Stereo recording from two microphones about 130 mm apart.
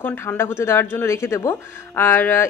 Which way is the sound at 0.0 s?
15° left (ahead or behind).